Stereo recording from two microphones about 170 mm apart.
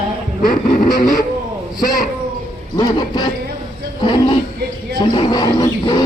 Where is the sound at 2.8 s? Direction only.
25° left (ahead or behind).